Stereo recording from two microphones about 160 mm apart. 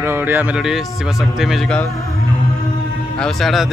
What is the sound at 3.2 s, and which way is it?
Speech, centre (ahead or behind).